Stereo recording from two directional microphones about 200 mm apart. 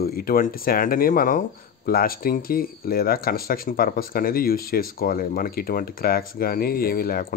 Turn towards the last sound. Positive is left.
turn(degrees=45)  # may be behind; listen again after turning